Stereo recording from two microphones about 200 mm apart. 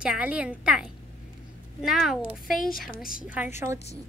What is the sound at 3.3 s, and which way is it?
Speech, 10° right (ahead or behind).